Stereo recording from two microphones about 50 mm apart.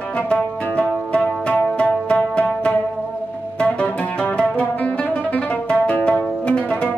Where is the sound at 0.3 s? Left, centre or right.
Left.